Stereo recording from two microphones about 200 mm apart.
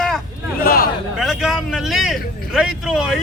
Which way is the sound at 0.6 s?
45° left (ahead or behind).